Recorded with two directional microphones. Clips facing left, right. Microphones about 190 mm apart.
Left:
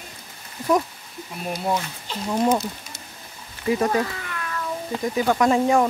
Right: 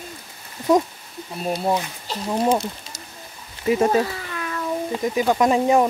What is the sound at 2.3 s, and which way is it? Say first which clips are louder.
Speech: even; 15° right (ahead or behind).